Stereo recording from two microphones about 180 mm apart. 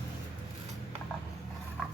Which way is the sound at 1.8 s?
Centre (ahead or behind).